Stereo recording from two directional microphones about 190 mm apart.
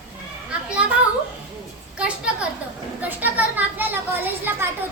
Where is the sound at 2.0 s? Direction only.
5° right (ahead or behind).